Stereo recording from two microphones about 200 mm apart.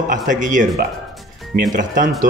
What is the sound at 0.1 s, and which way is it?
A man's voice, 40° right (ahead or behind).